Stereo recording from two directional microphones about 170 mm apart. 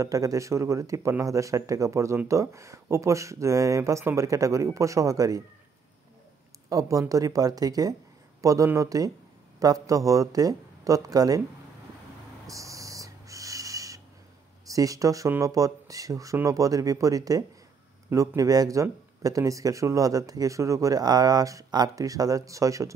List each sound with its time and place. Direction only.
0.0 s speech: 20° right (ahead or behind)
6.7 s speech: 20° right (ahead or behind)
12.4 s owl: 20° right (ahead or behind)
14.7 s speech: 20° right (ahead or behind)